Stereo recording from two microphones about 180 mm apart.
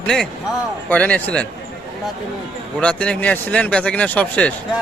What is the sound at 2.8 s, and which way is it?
A man's voice, 5° left (ahead or behind).